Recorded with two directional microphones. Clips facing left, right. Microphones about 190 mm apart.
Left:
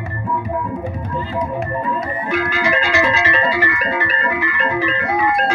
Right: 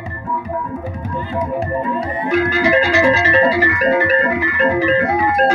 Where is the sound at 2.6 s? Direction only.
35° right (ahead or behind).